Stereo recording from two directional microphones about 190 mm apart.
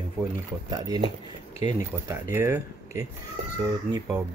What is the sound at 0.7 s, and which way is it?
Speech, 20° right (ahead or behind).